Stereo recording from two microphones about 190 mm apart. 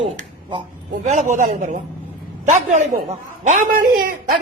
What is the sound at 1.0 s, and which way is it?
A woman's voice, 40° right (ahead or behind).